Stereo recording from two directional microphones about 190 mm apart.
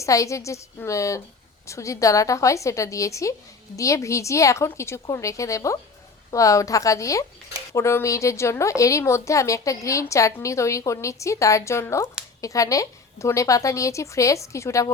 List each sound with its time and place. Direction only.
0.0 s a woman's voice: 15° left (ahead or behind)